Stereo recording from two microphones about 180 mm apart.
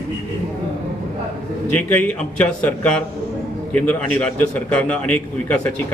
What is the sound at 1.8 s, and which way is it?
A man's voice, 5° left (ahead or behind).